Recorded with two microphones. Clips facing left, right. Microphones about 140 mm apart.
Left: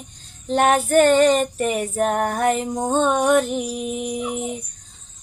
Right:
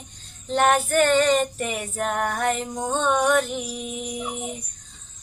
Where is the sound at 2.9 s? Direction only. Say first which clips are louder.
Left 3 dB; 40° left (ahead or behind).